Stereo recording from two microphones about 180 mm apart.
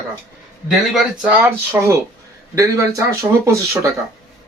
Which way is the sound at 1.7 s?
15° right (ahead or behind).